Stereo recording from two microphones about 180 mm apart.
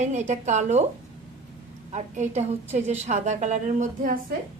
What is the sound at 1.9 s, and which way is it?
A woman's voice, 40° right (ahead or behind).